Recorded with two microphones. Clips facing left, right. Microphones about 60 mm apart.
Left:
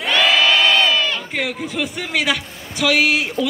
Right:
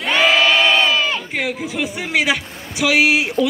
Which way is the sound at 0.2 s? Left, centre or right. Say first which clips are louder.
Right 1 dB; centre.